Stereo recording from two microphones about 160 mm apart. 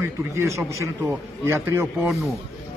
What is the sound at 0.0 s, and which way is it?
A man's voice, 15° right (ahead or behind).